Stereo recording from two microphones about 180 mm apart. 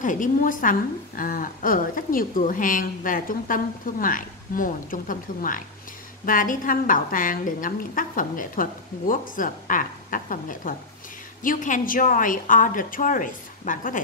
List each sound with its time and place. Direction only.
0.0 s a woman's voice: 45° left (ahead or behind)